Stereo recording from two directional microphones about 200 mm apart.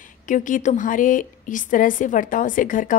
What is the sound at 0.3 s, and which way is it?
A woman's voice, 40° left (ahead or behind).